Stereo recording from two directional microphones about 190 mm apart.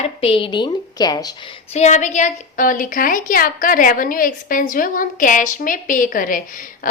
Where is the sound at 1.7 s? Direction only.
40° left (ahead or behind).